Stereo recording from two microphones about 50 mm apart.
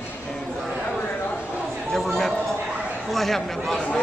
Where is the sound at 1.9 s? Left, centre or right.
Centre.